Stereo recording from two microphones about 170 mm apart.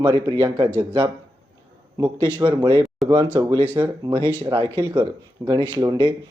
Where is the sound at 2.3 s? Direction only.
25° right (ahead or behind).